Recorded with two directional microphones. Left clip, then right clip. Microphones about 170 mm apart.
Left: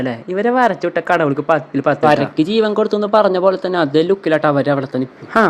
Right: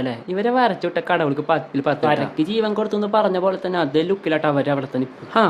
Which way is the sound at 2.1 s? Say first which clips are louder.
Left 6 dB; 40° left (ahead or behind).